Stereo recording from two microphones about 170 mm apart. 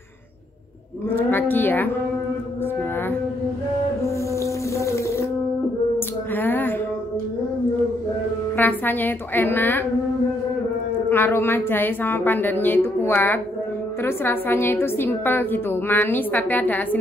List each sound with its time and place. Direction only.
1.1 s a woman's voice: 10° left (ahead or behind)
4.0 s music: 15° left (ahead or behind)
5.9 s a sound: 10° left (ahead or behind)
8.5 s a woman's voice: 10° left (ahead or behind)
11.1 s a woman's voice: 15° left (ahead or behind)